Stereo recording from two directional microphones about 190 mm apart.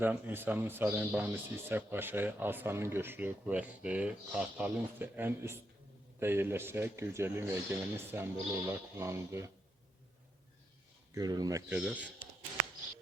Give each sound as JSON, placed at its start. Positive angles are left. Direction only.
{"t": 0.0, "sound": "speech", "side_deg": -10}
{"t": 11.1, "sound": "speech", "side_deg": -20}
{"t": 11.8, "sound": "speech", "side_deg": -5}